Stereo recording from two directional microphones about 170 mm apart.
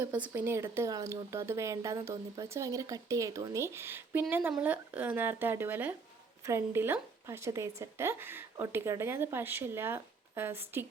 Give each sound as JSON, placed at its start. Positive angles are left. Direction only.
{"t": 0.0, "sound": "speech", "side_deg": -10}